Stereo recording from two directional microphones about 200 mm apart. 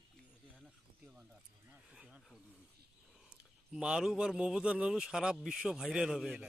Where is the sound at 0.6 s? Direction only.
5° right (ahead or behind).